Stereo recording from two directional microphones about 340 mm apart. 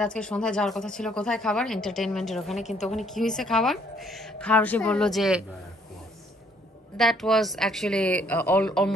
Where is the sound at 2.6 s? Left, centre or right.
Centre.